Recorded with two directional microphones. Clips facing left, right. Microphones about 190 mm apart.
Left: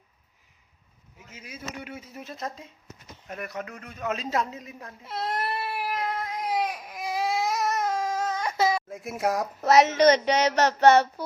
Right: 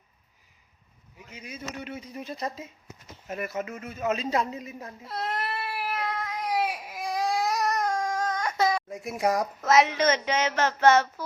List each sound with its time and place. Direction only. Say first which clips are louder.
1.3 s a man's voice: right 1 dB; 5° left (ahead or behind)
5.1 s speech: left 1 dB; 10° left (ahead or behind)
5.9 s baby cry: left 1 dB; 30° left (ahead or behind)
6.6 s baby cry: even; 10° right (ahead or behind)
7.9 s a sound: left 1 dB; 25° left (ahead or behind)
8.2 s a sound: even; 5° left (ahead or behind)
8.6 s a child's voice: left 1 dB; 5° left (ahead or behind)
9.6 s speech: left 5 dB; 35° left (ahead or behind)